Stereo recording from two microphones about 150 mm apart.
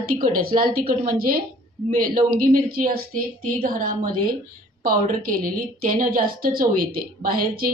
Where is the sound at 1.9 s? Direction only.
70° right (ahead or behind).